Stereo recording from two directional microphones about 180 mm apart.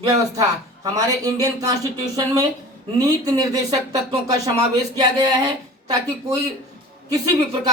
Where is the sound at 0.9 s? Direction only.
20° right (ahead or behind).